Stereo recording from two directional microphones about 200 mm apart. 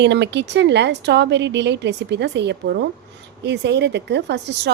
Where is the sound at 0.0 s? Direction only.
60° right (ahead or behind).